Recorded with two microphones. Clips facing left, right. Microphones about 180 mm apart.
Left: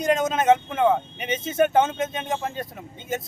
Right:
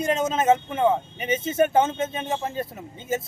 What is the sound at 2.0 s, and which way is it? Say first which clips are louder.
Speech: even; 30° right (ahead or behind).